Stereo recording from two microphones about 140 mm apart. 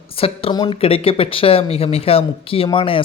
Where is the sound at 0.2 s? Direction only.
40° left (ahead or behind).